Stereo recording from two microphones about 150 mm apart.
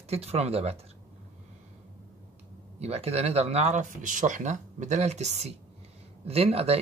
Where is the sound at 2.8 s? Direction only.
45° right (ahead or behind).